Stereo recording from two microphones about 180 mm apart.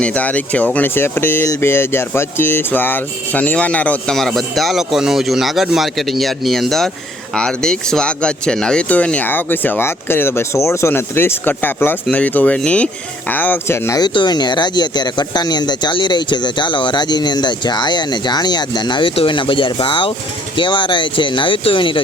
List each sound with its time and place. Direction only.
0.0 s speech: 10° left (ahead or behind); by 22.0 s 30° left (ahead or behind)